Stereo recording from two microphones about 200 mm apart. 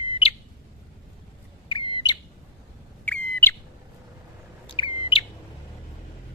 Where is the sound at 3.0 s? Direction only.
5° left (ahead or behind).